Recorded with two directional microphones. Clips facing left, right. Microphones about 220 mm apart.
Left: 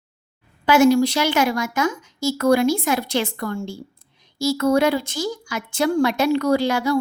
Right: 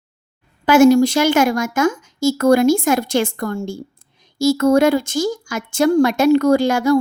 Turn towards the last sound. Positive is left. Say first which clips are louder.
# right 5 dB
turn(degrees=-45)  # may be behind; listen again after turning